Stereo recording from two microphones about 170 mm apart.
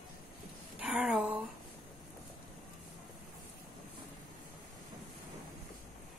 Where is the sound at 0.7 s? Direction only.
5° right (ahead or behind).